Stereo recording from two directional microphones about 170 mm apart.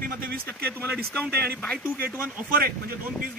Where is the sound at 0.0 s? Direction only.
60° right (ahead or behind).